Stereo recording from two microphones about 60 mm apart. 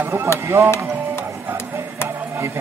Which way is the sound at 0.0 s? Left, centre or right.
Right.